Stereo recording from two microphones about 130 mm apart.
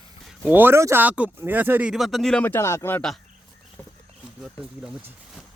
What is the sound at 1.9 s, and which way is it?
Speech, centre (ahead or behind).